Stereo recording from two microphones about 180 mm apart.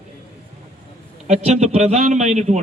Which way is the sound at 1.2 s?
35° right (ahead or behind).